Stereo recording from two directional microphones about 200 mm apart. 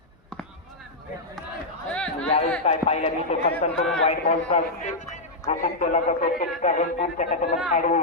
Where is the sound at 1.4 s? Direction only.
Centre (ahead or behind).